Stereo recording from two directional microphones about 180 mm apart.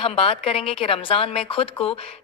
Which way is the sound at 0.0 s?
30° left (ahead or behind).